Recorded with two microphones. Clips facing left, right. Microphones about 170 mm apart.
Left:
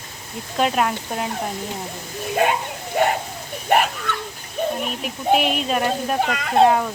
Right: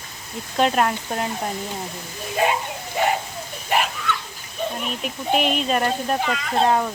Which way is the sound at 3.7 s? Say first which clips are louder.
Left 4 dB; 55° left (ahead or behind).